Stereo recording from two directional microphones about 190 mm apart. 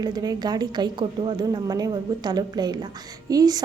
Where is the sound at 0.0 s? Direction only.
20° right (ahead or behind).